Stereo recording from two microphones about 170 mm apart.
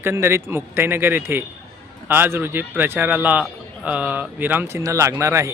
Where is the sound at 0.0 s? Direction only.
15° right (ahead or behind).